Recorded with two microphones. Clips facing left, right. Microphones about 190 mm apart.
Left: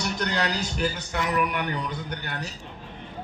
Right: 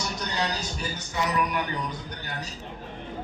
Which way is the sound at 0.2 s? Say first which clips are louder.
Left 2 dB; 70° left (ahead or behind).